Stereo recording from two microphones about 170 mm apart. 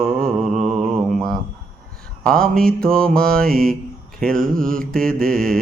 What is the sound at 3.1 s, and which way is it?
Mantra, 60° right (ahead or behind).